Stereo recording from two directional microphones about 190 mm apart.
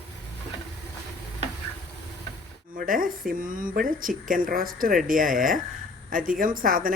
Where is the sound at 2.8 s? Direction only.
45° right (ahead or behind).